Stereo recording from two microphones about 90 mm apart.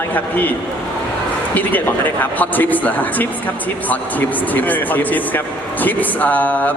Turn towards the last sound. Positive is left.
turn(degrees=20)  # may be behind; listen again after turning